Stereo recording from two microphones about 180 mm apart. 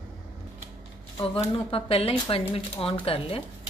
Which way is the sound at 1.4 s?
30° left (ahead or behind).